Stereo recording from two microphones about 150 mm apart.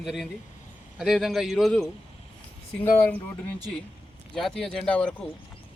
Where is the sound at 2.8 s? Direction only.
15° left (ahead or behind).